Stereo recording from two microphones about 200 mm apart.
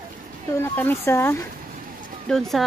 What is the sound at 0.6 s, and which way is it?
Speech, 10° left (ahead or behind).